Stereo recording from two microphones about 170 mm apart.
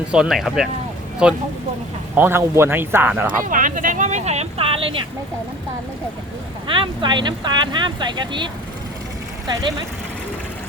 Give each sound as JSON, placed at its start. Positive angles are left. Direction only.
{"t": 0.1, "sound": "speech", "side_deg": -5}
{"t": 3.4, "sound": "speech", "side_deg": -50}
{"t": 6.7, "sound": "speech", "side_deg": -30}